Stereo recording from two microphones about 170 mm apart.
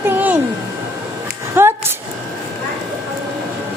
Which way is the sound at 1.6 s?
10° right (ahead or behind).